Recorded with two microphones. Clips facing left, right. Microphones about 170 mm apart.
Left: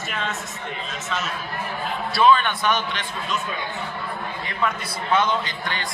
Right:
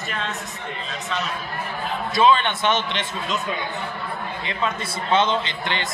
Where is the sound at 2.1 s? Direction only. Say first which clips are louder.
Even; 20° right (ahead or behind).